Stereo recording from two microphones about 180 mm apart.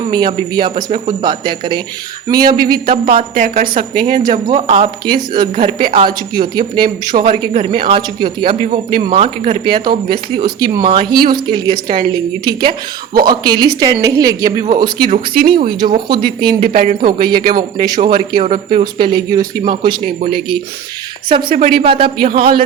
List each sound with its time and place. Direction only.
0.1 s speech: 25° right (ahead or behind)
3.3 s a woman's voice: 45° right (ahead or behind)
4.2 s speech: 20° right (ahead or behind)
15.1 s a woman's voice: 50° right (ahead or behind)
15.5 s speech: 25° right (ahead or behind)
16.6 s a woman's voice: 45° right (ahead or behind)
17.1 s speech: 25° right (ahead or behind)
18.4 s a woman's voice: 50° right (ahead or behind)
18.8 s speech: 25° right (ahead or behind)
20.1 s speech: 55° right (ahead or behind)
21.2 s a woman's voice: 30° right (ahead or behind)